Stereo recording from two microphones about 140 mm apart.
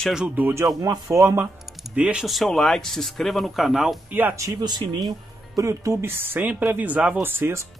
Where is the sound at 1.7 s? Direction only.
5° right (ahead or behind).